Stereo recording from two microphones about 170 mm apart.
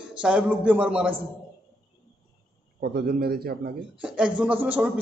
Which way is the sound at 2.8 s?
65° right (ahead or behind).